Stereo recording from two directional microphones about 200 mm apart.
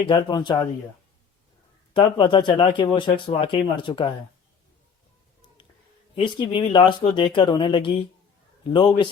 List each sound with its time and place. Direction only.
0.1 s speech: 25° left (ahead or behind)
1.9 s speech: 25° left (ahead or behind)
6.2 s speech: 25° left (ahead or behind)